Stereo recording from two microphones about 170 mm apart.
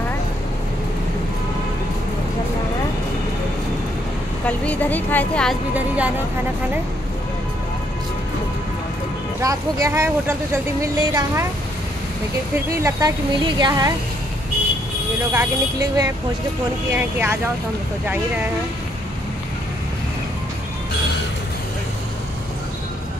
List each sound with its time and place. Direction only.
4.5 s a woman's voice: 10° left (ahead or behind)
5.8 s speech: 10° right (ahead or behind)
9.4 s speech: 20° right (ahead or behind)
12.5 s speech: 15° right (ahead or behind)
15.3 s speech: 20° right (ahead or behind)